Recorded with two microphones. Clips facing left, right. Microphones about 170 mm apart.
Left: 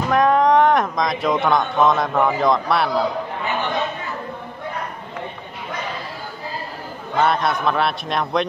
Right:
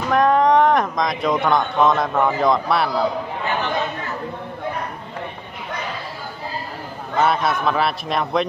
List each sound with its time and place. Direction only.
0.1 s speech: centre (ahead or behind)
7.2 s speech: centre (ahead or behind)